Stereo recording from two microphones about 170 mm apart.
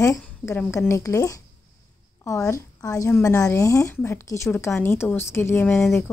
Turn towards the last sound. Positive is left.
turn(degrees=15)  # may be behind; listen again after turning